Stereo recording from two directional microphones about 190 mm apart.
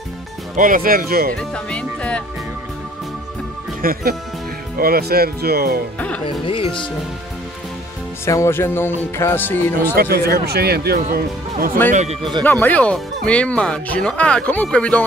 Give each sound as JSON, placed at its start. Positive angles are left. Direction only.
{"t": 0.6, "sound": "speech", "side_deg": -45}
{"t": 1.3, "sound": "music", "side_deg": 5}
{"t": 3.8, "sound": "speech", "side_deg": -50}
{"t": 5.9, "sound": "speech", "side_deg": 5}
{"t": 6.2, "sound": "speech", "side_deg": 25}
{"t": 8.3, "sound": "speech", "side_deg": 15}
{"t": 9.9, "sound": "speech", "side_deg": -55}
{"t": 11.9, "sound": "a man's voice", "side_deg": -35}
{"t": 12.4, "sound": "speech", "side_deg": 10}